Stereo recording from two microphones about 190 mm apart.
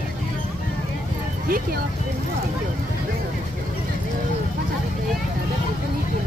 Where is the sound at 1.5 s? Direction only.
50° right (ahead or behind).